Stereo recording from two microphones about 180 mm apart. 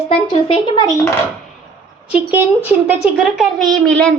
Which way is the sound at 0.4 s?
30° left (ahead or behind).